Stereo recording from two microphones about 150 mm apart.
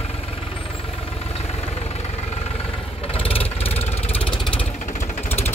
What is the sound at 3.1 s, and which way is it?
Vehicle, 40° left (ahead or behind).